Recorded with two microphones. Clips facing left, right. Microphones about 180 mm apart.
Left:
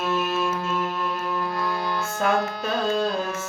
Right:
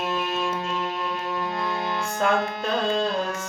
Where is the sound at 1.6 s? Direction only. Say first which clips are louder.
Left 1 dB; 20° right (ahead or behind).